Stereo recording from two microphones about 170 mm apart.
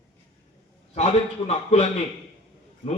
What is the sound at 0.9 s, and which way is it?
Speech, 40° left (ahead or behind).